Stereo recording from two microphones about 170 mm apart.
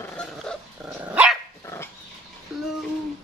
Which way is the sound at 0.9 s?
10° right (ahead or behind).